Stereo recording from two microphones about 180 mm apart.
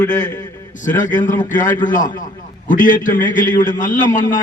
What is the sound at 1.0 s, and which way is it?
A man's voice, 45° left (ahead or behind).